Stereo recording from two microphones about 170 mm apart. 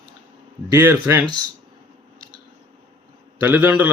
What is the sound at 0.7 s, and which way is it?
Speech, 15° right (ahead or behind).